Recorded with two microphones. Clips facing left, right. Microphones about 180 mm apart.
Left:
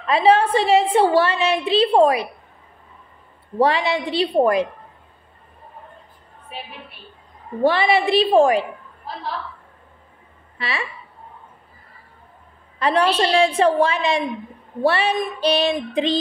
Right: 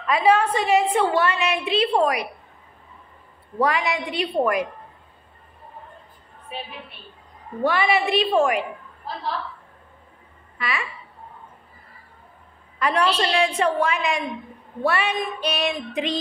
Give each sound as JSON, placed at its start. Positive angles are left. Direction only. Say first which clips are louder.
{"t": 0.0, "sound": "a woman's voice", "louder": "left 3 dB", "side_deg": 30}
{"t": 3.5, "sound": "a woman's voice", "louder": "left 4 dB", "side_deg": 30}
{"t": 7.6, "sound": "a woman's voice", "louder": "left 4 dB", "side_deg": 30}
{"t": 10.6, "sound": "a woman's voice", "louder": "left 1 dB", "side_deg": 30}
{"t": 12.7, "sound": "a woman's voice", "louder": "left 3 dB", "side_deg": 30}